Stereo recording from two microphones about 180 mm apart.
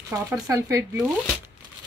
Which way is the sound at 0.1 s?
15° right (ahead or behind).